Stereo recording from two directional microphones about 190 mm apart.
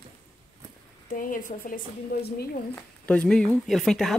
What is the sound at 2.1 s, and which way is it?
Speech, 55° left (ahead or behind).